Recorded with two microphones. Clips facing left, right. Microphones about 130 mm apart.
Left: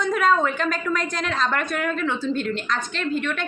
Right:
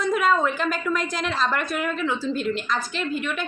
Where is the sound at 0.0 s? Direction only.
5° right (ahead or behind).